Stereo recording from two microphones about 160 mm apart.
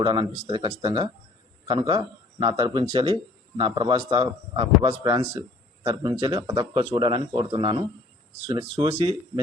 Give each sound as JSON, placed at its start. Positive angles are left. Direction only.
{"t": 0.0, "sound": "a man's voice", "side_deg": -30}